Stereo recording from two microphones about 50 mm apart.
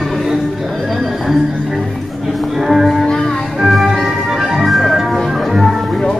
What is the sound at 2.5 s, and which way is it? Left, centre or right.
Music, centre.